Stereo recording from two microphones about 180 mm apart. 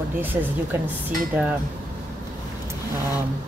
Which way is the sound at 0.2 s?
10° right (ahead or behind).